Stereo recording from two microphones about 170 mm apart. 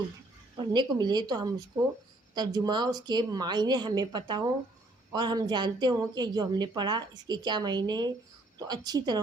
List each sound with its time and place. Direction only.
0.6 s a woman's voice: 25° right (ahead or behind)